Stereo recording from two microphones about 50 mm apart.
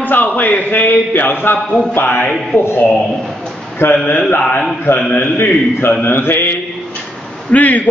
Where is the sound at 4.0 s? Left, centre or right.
Centre.